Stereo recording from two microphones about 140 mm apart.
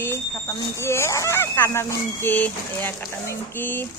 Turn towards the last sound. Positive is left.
turn(degrees=15)  # may be behind; listen again after turning